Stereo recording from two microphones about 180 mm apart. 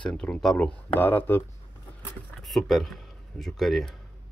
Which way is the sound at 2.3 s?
Centre (ahead or behind).